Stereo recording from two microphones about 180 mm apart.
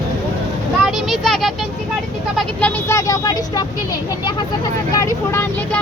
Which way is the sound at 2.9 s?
15° left (ahead or behind).